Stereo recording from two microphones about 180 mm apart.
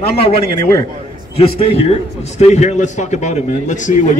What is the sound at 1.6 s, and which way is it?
A man's voice, 35° left (ahead or behind).